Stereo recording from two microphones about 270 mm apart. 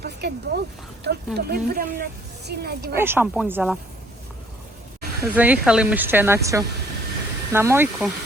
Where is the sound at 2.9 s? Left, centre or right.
Centre.